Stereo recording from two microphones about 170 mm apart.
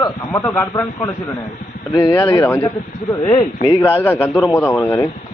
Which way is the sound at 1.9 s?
15° left (ahead or behind).